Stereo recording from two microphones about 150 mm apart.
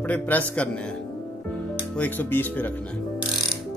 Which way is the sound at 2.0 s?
10° left (ahead or behind).